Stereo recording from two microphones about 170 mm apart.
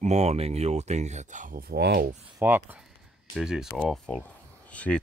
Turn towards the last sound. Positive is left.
turn(degrees=5)  # may be behind; listen again after turning